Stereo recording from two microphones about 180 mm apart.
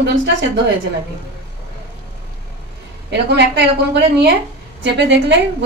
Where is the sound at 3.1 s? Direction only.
65° right (ahead or behind).